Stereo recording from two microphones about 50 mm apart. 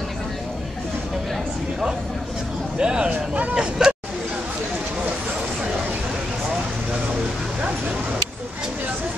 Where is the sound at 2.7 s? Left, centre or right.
Centre.